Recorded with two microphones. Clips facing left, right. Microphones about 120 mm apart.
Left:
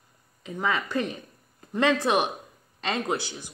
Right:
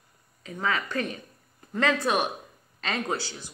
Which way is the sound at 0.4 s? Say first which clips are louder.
Left 1 dB; 15° left (ahead or behind).